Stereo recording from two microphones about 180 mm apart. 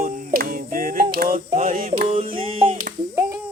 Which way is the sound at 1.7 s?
50° right (ahead or behind).